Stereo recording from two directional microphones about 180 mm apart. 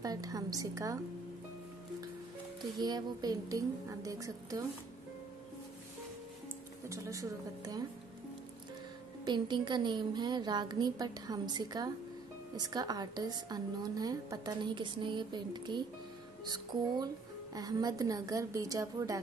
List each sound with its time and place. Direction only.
0.0 s a woman's voice: 20° right (ahead or behind)
2.6 s a woman's voice: 25° right (ahead or behind)
6.9 s a woman's voice: 20° right (ahead or behind)
9.2 s a woman's voice: 25° right (ahead or behind)